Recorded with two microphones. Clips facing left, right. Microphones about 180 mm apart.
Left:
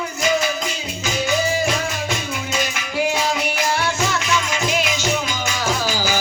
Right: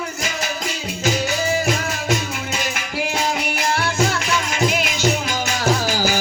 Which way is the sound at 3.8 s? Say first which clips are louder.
Right 1 dB; 45° right (ahead or behind).